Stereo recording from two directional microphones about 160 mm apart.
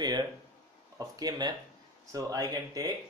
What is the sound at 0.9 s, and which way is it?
Speech, 25° right (ahead or behind).